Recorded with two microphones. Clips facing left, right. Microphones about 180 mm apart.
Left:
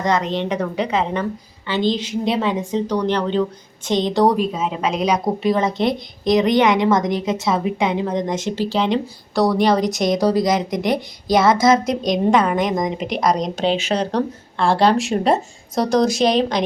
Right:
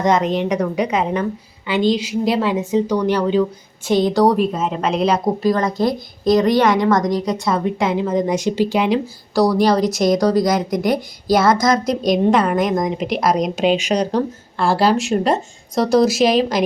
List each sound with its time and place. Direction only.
0.0 s a woman's voice: 20° right (ahead or behind); by 5.7 s centre (ahead or behind)
5.7 s a woman's voice: 20° left (ahead or behind)
6.8 s a woman's voice: centre (ahead or behind)